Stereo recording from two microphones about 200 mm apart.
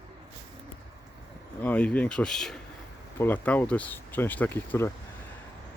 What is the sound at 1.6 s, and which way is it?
Speech, 5° left (ahead or behind).